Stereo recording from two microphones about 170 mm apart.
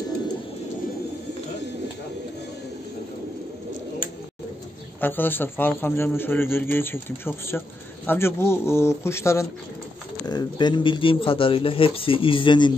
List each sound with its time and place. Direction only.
5.0 s a man's voice: 10° left (ahead or behind); by 12.7 s 25° left (ahead or behind)